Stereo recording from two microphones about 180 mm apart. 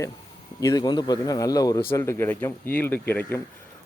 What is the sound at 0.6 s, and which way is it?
Speech, 20° left (ahead or behind).